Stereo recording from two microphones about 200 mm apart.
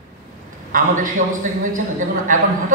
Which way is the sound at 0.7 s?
40° right (ahead or behind).